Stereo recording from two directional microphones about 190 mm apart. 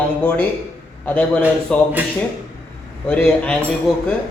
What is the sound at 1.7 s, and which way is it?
Speech, 5° left (ahead or behind).